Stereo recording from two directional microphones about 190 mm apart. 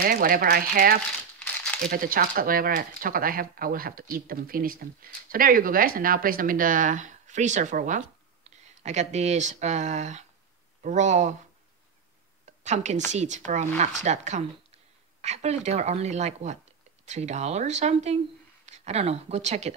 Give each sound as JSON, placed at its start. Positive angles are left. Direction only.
{"t": 0.0, "sound": "speech", "side_deg": -50}
{"t": 1.4, "sound": "crumpling", "side_deg": 5}
{"t": 1.9, "sound": "speech", "side_deg": -50}
{"t": 8.5, "sound": "a sound", "side_deg": -35}
{"t": 8.8, "sound": "speech", "side_deg": -35}
{"t": 12.4, "sound": "a sound", "side_deg": -40}
{"t": 13.1, "sound": "speech", "side_deg": -40}